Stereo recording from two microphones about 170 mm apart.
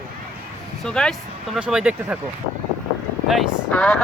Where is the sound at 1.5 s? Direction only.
5° right (ahead or behind).